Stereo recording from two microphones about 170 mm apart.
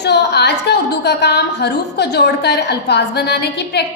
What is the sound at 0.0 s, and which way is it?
A woman's voice, 75° left (ahead or behind).